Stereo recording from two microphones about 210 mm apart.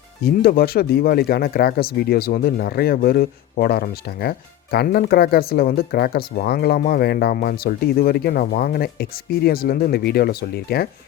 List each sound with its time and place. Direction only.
0.3 s speech: 45° left (ahead or behind)